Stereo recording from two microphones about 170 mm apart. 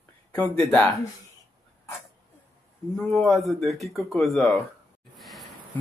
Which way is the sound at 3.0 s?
5° left (ahead or behind).